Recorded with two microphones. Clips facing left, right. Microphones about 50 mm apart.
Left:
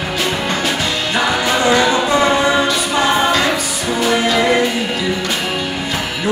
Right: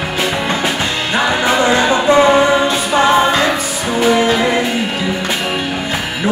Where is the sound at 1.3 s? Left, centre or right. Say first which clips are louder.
Right 2 dB; right.